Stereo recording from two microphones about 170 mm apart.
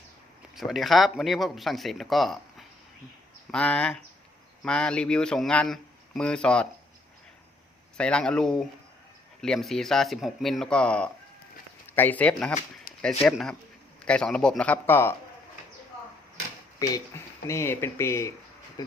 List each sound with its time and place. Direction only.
0.5 s speech: centre (ahead or behind)
7.9 s speech: 5° left (ahead or behind)
12.9 s a sound: 60° left (ahead or behind)
13.2 s speech: centre (ahead or behind)
16.8 s speech: 20° left (ahead or behind)